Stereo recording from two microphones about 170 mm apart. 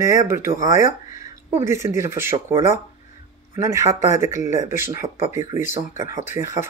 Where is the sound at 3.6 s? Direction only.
15° right (ahead or behind).